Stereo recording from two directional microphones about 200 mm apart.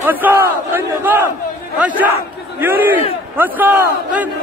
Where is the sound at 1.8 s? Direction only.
5° right (ahead or behind).